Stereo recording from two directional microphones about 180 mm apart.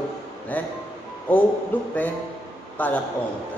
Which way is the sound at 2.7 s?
10° left (ahead or behind).